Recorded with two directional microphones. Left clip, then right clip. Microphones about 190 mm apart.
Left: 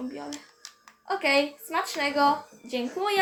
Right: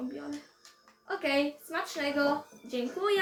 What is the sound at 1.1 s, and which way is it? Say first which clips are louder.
Speech: left 6 dB; 40° left (ahead or behind).